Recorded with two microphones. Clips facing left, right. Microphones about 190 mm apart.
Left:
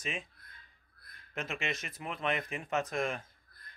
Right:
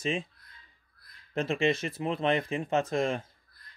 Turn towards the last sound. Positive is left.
turn(degrees=-25)  # may be behind; listen again after turning